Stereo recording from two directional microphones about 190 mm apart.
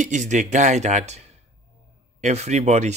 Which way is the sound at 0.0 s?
40° right (ahead or behind).